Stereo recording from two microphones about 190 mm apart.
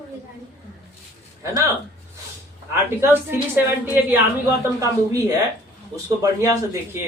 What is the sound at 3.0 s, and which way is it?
A woman's voice, 10° right (ahead or behind).